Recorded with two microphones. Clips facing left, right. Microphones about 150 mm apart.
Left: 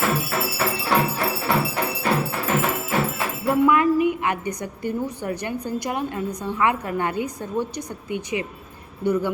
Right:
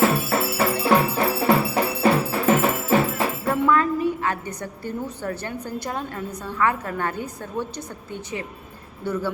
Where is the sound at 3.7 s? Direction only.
15° left (ahead or behind).